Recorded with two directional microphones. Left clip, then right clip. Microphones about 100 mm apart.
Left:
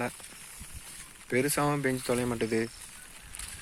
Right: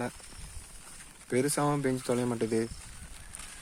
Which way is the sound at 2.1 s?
15° right (ahead or behind).